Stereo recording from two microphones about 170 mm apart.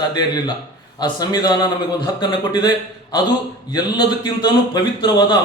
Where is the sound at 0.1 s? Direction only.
25° left (ahead or behind).